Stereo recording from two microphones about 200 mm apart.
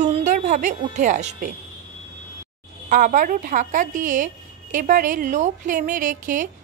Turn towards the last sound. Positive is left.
turn(degrees=-40)  # may be behind; listen again after turning